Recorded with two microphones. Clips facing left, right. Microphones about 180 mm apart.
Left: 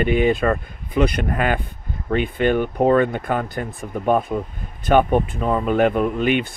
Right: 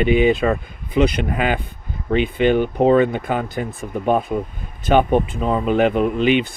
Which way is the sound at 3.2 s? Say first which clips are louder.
Right 1 dB; 5° right (ahead or behind).